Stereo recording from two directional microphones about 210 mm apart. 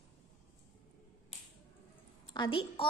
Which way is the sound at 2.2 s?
20° left (ahead or behind).